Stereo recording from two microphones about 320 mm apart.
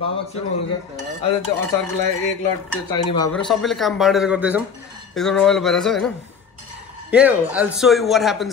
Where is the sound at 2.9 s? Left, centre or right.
Centre.